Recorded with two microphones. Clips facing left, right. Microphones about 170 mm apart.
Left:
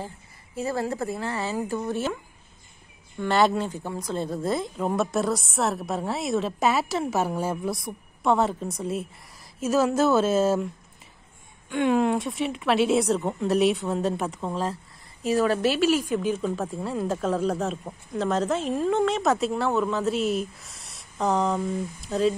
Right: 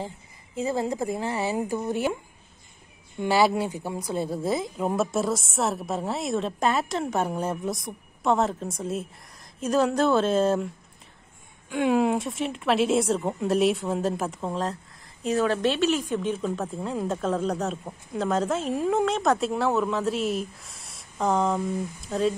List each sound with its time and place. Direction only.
0.6 s speech: 15° right (ahead or behind)
3.2 s a woman's voice: 5° right (ahead or behind)
11.7 s a woman's voice: 5° right (ahead or behind)